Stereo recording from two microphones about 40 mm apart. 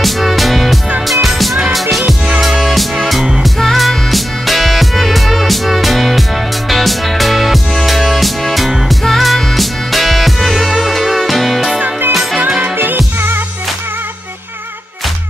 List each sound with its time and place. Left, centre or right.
0.0 s music: centre
12.4 s music: right
12.7 s music: right